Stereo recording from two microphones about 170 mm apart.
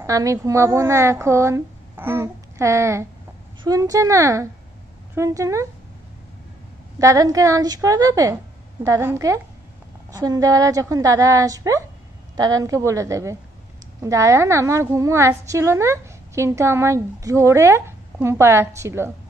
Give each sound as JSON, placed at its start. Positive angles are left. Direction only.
{"t": 0.0, "sound": "a woman's voice", "side_deg": -20}
{"t": 7.0, "sound": "a woman's voice", "side_deg": -20}